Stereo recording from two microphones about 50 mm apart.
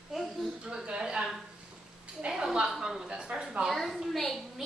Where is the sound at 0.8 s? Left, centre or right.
Centre.